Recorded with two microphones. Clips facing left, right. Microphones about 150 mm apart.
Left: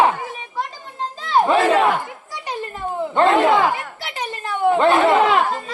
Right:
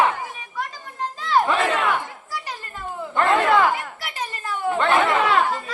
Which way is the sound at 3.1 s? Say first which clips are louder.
Left 3 dB; 20° left (ahead or behind).